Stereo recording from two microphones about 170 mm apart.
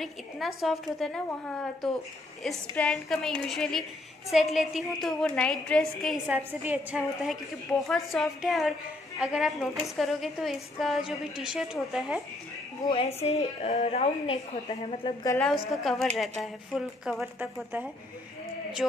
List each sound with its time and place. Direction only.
0.0 s a woman's voice: centre (ahead or behind)
12.8 s a woman's voice: 35° left (ahead or behind)
15.7 s a woman's voice: centre (ahead or behind)